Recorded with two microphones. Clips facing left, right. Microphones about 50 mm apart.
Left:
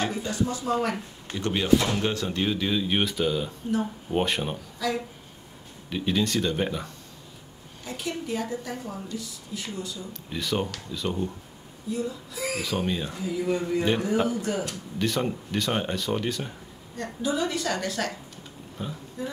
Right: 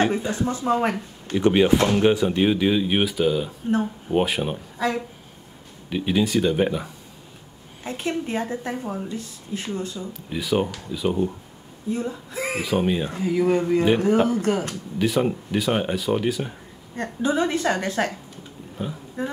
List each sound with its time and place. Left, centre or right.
0.0 s speech: right; by 4.6 s centre
4.7 s speech: right
5.9 s speech: centre
7.8 s a woman's voice: right
10.3 s speech: centre
11.9 s a woman's voice: right
12.6 s speech: centre
13.2 s speech: right
13.6 s a woman's voice: right
15.0 s speech: centre
16.9 s a woman's voice: right
18.8 s speech: centre
19.2 s a woman's voice: right